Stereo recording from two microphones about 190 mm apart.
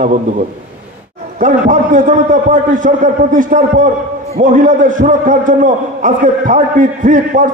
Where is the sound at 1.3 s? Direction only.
45° right (ahead or behind).